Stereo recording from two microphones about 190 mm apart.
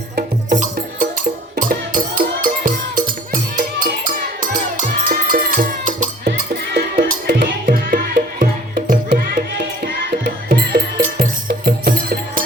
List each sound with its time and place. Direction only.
0.5 s music: 45° right (ahead or behind)